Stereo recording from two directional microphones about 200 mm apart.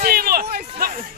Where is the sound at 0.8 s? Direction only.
40° right (ahead or behind).